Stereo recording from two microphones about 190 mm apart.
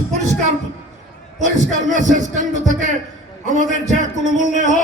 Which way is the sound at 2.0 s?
40° right (ahead or behind).